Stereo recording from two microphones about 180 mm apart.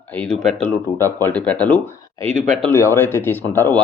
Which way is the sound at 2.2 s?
40° right (ahead or behind).